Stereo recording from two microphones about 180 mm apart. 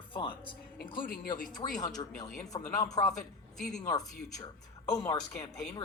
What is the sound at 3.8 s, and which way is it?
A woman's voice, 20° left (ahead or behind).